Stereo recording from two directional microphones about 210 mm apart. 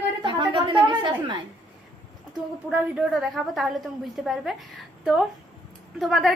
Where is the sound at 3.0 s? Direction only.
Centre (ahead or behind).